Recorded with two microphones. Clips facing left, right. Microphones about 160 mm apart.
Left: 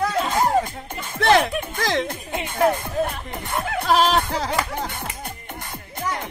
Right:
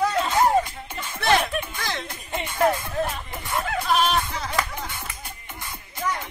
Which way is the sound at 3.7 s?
90° left.